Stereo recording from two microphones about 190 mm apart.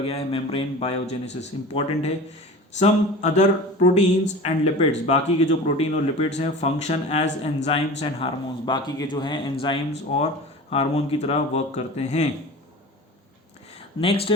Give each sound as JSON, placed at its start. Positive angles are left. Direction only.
{"t": 0.0, "sound": "speech", "side_deg": 30}
{"t": 14.0, "sound": "speech", "side_deg": 30}